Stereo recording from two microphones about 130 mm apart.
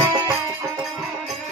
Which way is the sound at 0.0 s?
30° right (ahead or behind).